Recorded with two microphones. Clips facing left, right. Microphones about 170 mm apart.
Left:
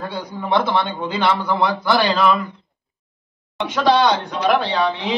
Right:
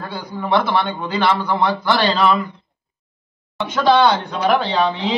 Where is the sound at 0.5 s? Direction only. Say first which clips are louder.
Right 1 dB; 20° left (ahead or behind).